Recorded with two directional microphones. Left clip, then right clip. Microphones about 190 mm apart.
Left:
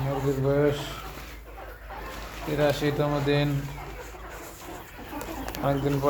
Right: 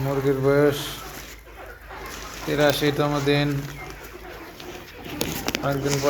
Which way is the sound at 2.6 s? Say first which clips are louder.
Right 4 dB; 20° right (ahead or behind).